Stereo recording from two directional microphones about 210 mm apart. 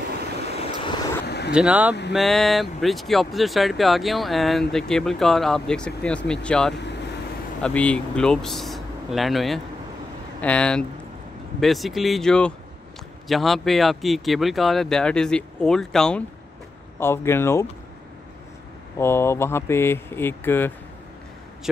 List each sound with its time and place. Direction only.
0.6 s vehicle: 25° left (ahead or behind)
1.2 s vehicle: 50° left (ahead or behind)
1.5 s speech: 5° right (ahead or behind)
6.7 s speech: 55° left (ahead or behind)
7.6 s speech: 5° left (ahead or behind)
18.9 s speech: 10° left (ahead or behind)